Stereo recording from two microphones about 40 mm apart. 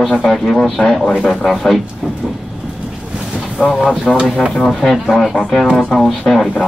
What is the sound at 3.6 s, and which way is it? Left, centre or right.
Speech, centre.